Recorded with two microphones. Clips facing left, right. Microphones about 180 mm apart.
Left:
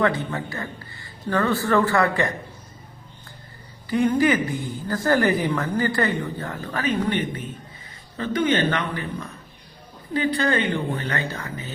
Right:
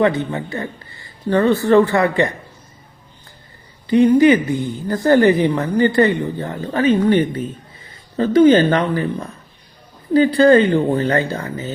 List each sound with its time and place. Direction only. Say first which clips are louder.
0.0 s a woman's voice: right 6 dB; 20° right (ahead or behind)
3.8 s a woman's voice: right 8 dB; 20° right (ahead or behind)